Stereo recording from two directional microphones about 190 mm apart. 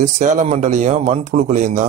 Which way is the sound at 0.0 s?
40° right (ahead or behind).